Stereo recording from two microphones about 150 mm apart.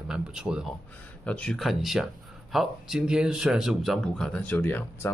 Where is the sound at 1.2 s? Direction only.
5° left (ahead or behind).